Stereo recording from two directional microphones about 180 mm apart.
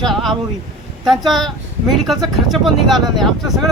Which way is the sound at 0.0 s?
Centre (ahead or behind).